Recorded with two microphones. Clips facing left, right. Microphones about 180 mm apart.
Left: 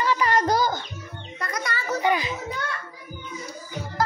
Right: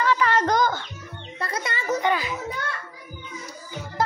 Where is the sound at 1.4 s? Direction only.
25° right (ahead or behind).